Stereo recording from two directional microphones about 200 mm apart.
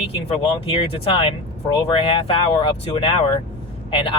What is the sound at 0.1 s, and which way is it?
Speech, 30° left (ahead or behind).